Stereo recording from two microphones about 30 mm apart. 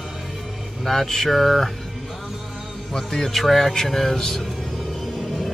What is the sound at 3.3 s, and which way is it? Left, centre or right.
Speech, centre.